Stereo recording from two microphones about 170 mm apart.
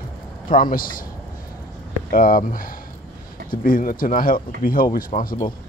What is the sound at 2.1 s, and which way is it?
Speech, 55° left (ahead or behind).